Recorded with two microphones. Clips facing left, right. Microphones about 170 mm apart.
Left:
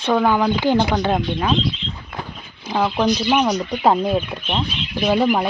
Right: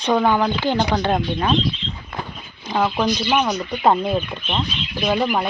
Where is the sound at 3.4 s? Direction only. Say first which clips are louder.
Left 3 dB; 15° left (ahead or behind).